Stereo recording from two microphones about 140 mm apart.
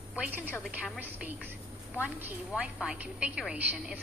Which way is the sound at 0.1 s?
10° right (ahead or behind).